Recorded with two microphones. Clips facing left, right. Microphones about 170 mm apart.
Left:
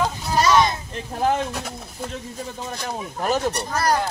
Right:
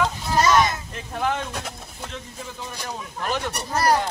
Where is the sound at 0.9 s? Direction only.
35° left (ahead or behind).